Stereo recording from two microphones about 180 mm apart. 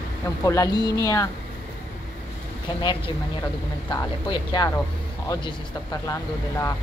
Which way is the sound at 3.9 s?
25° left (ahead or behind).